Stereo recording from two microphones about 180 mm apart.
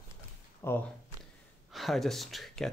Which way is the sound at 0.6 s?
15° left (ahead or behind).